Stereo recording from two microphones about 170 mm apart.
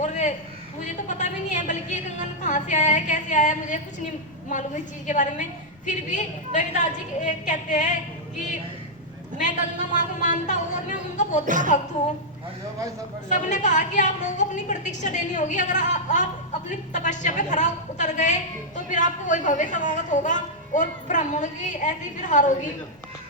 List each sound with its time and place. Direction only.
0.0 s a sound: 45° left (ahead or behind)
0.9 s speech: 45° left (ahead or behind)
9.4 s speech: 45° left (ahead or behind)
11.4 s a woman's voice: 50° right (ahead or behind)
13.2 s speech: 45° left (ahead or behind)